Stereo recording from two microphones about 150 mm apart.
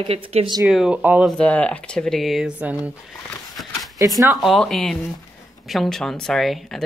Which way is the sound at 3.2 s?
Centre (ahead or behind).